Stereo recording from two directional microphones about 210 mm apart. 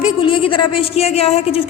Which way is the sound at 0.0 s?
25° left (ahead or behind).